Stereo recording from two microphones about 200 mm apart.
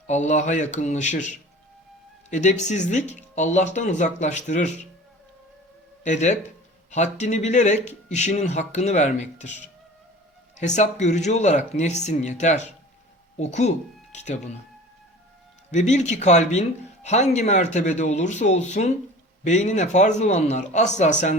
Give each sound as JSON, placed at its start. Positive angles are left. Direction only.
{"t": 0.1, "sound": "speech", "side_deg": 35}
{"t": 6.0, "sound": "speech", "side_deg": 35}
{"t": 10.6, "sound": "speech", "side_deg": 35}
{"t": 15.7, "sound": "speech", "side_deg": 35}